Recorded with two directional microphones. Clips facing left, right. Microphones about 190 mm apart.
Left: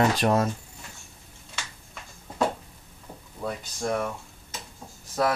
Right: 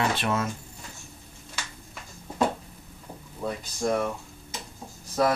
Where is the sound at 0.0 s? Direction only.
40° left (ahead or behind).